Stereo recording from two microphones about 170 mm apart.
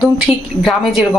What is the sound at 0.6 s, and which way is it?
Speech, centre (ahead or behind).